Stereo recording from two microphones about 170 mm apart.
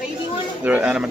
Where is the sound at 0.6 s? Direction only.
5° right (ahead or behind).